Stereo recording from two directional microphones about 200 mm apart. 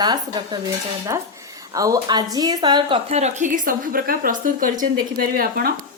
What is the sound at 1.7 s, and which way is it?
A woman's voice, 15° right (ahead or behind).